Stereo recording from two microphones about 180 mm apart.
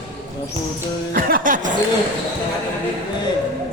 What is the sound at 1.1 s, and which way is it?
Speech, 50° right (ahead or behind).